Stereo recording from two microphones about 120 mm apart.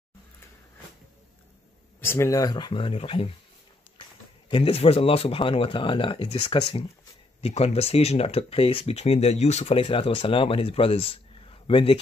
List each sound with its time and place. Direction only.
2.0 s speech: 20° left (ahead or behind); by 3.3 s 50° left (ahead or behind)
4.5 s speech: 50° left (ahead or behind)